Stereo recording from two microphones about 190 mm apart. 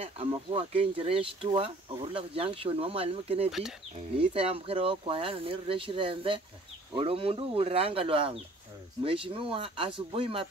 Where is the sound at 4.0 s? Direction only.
30° right (ahead or behind).